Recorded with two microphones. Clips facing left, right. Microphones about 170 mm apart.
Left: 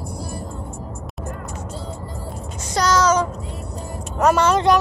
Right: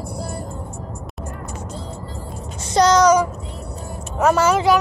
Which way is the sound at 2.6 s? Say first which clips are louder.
Right 4 dB; 20° right (ahead or behind).